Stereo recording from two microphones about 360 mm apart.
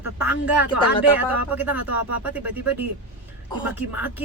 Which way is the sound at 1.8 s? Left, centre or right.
Right.